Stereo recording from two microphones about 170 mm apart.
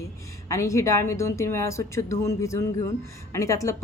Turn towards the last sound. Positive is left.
turn(degrees=15)  # may be behind; listen again after turning